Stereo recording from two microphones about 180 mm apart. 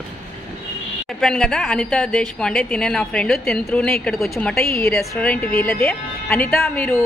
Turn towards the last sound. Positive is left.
turn(degrees=10)  # may be behind; listen again after turning